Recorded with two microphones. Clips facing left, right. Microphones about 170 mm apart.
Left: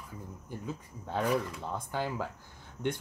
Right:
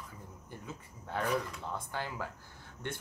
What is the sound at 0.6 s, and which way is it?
Speech, 15° left (ahead or behind).